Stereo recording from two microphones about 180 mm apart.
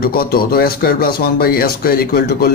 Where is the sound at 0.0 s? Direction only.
55° left (ahead or behind).